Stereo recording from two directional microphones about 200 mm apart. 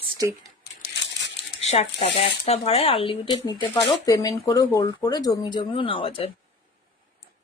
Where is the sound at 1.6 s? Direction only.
30° left (ahead or behind).